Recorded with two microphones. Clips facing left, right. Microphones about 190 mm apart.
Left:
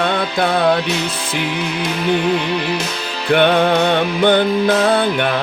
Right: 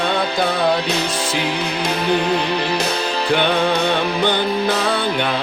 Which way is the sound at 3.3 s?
55° left (ahead or behind).